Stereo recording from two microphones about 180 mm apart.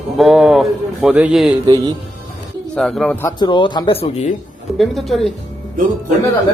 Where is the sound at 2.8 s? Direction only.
5° left (ahead or behind); by 4.2 s 30° left (ahead or behind).